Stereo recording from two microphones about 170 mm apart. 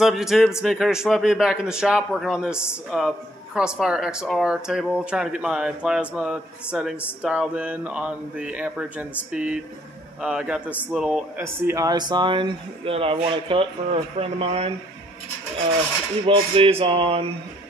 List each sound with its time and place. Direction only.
0.0 s a man's voice: centre (ahead or behind); by 14.7 s 35° right (ahead or behind)
16.3 s speech: 30° right (ahead or behind)